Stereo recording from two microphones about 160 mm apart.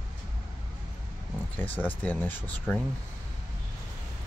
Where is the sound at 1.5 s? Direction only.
10° left (ahead or behind).